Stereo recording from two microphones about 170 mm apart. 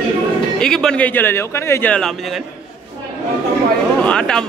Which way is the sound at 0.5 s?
5° left (ahead or behind).